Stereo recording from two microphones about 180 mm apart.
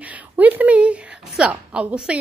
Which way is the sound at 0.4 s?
10° right (ahead or behind).